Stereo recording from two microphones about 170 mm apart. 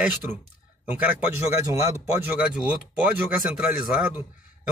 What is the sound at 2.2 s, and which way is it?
A man's voice, 5° right (ahead or behind).